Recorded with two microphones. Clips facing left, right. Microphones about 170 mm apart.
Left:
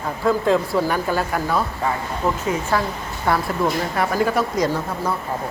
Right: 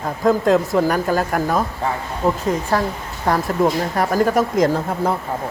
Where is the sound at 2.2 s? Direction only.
15° right (ahead or behind).